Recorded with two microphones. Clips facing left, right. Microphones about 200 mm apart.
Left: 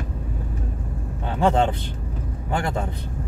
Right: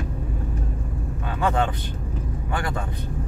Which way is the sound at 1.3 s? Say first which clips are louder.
Left 4 dB; 25° left (ahead or behind).